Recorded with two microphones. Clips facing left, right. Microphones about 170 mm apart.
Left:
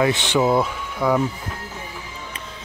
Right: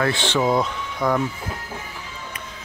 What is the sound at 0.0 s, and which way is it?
Speech, 15° left (ahead or behind).